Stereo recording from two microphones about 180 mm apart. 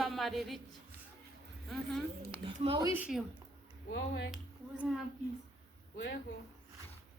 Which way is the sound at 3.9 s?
75° left (ahead or behind).